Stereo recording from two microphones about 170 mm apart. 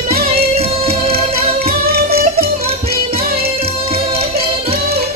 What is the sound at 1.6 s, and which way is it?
Music, 65° right (ahead or behind).